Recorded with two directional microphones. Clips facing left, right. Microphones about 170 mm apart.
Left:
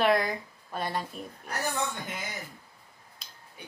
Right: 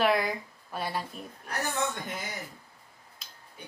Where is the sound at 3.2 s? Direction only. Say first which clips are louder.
Even; centre (ahead or behind).